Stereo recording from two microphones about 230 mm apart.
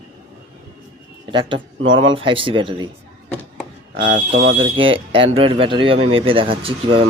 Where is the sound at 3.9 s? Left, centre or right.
Right.